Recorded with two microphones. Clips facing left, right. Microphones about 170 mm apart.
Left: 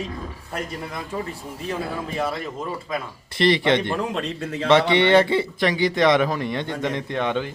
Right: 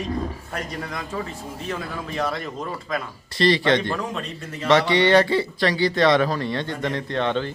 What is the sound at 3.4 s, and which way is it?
Speech, 20° left (ahead or behind).